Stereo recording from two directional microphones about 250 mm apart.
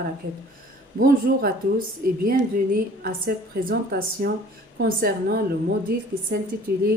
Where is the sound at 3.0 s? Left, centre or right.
Right.